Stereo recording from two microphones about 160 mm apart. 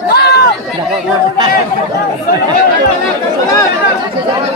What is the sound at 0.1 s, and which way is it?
Chatter, 90° left.